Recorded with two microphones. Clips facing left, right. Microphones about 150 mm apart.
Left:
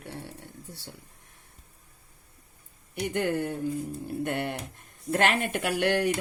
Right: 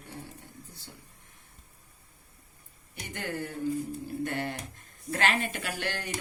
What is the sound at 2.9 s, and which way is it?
Speech, 60° left (ahead or behind).